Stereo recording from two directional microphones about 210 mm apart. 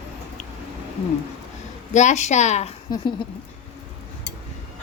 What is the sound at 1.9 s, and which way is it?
Speech, 35° left (ahead or behind).